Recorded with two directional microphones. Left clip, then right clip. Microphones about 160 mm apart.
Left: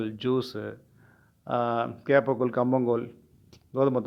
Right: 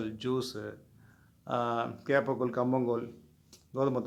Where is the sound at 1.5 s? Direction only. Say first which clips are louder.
Left 5 dB; 25° left (ahead or behind).